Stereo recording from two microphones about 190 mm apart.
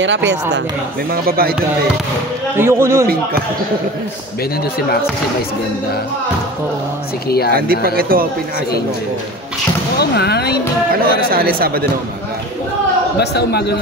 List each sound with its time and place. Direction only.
0.0 s speech: 70° right (ahead or behind)
1.1 s speech: 50° right (ahead or behind)
2.5 s a man's voice: 15° right (ahead or behind)
7.2 s speech: 55° left (ahead or behind)
7.8 s speech: 50° right (ahead or behind)
9.9 s speech: 60° left (ahead or behind)
11.0 s speech: 50° right (ahead or behind)
13.2 s speech: 60° left (ahead or behind)